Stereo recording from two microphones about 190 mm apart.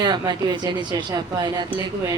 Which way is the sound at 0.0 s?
20° right (ahead or behind).